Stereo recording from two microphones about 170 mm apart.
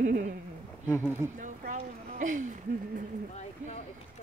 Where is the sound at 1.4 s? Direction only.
50° right (ahead or behind).